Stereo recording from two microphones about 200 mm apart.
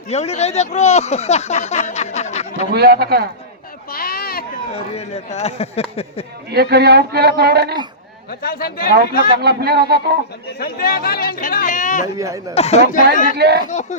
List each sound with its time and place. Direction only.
0.1 s speech: 30° left (ahead or behind)
2.7 s speech: 50° right (ahead or behind)
3.9 s a sound: 50° left (ahead or behind)
4.7 s speech: 30° left (ahead or behind)
6.5 s speech: 55° right (ahead or behind)
8.3 s speech: 45° left (ahead or behind)
9.4 s speech: 55° right (ahead or behind)
10.6 s speech: 45° left (ahead or behind)
12.1 s speech: 15° right (ahead or behind)
12.5 s speech: 30° left (ahead or behind)
13.3 s speech: 55° right (ahead or behind)